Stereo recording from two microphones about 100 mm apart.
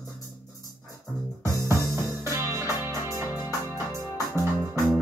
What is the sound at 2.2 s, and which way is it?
Music, 30° right (ahead or behind).